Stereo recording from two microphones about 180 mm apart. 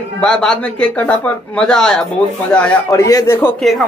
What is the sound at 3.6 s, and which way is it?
Speech, centre (ahead or behind).